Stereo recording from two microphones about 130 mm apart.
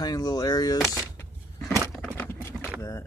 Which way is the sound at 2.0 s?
15° left (ahead or behind).